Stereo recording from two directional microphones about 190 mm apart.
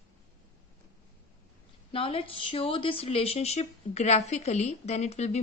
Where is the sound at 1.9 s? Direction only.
30° left (ahead or behind).